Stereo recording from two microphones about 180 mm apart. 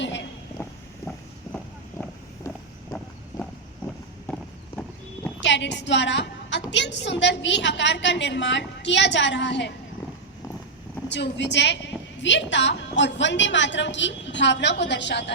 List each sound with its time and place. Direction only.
5.4 s a woman's voice: 80° left
11.1 s a woman's voice: 75° left (ahead or behind)